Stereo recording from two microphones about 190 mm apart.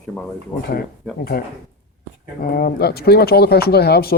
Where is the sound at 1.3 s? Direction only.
50° left (ahead or behind).